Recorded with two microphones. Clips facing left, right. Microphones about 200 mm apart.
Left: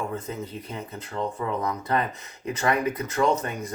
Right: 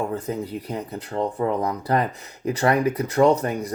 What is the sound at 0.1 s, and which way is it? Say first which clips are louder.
Speech: right 5 dB; 35° right (ahead or behind).